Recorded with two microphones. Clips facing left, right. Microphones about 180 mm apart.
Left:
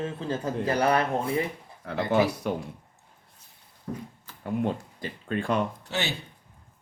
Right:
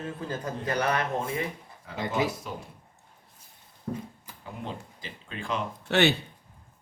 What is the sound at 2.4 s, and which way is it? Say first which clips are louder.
Speech: left 9 dB; 65° left (ahead or behind).